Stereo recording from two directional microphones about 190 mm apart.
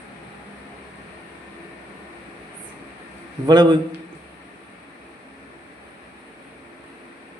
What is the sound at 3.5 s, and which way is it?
Speech, 20° right (ahead or behind).